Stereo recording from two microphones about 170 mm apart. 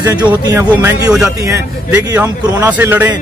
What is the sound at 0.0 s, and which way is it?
A man's voice, 10° right (ahead or behind).